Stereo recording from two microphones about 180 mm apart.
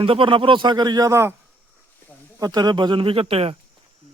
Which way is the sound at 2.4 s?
20° right (ahead or behind).